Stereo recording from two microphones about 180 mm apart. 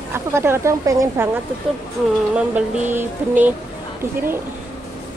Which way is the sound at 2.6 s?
10° right (ahead or behind).